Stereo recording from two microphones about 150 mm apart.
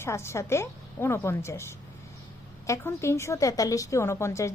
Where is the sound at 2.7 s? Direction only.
20° left (ahead or behind).